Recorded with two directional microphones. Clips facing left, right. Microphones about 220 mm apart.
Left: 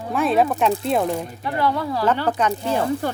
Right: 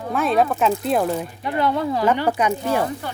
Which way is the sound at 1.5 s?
20° right (ahead or behind).